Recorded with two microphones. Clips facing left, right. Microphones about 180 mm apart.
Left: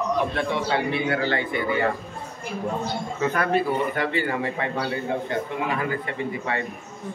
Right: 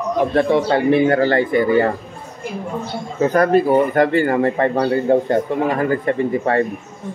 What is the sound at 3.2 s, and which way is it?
Speech, 40° right (ahead or behind).